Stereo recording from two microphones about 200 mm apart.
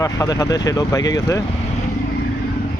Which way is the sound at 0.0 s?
15° left (ahead or behind).